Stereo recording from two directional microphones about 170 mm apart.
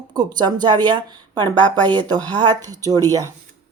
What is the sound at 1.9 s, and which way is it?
Speech, 25° right (ahead or behind).